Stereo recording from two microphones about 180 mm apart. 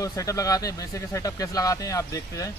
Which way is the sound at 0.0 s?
20° left (ahead or behind).